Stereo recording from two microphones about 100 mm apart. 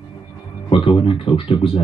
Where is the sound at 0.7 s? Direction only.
65° left (ahead or behind).